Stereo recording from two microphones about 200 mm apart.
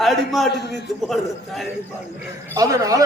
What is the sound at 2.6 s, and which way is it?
Speech, 15° right (ahead or behind).